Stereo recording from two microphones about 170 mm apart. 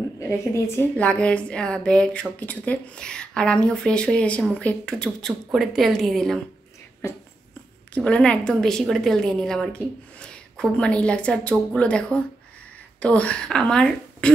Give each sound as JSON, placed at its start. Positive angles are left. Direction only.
{"t": 0.7, "sound": "speech", "side_deg": 10}
{"t": 7.0, "sound": "a woman's voice", "side_deg": 15}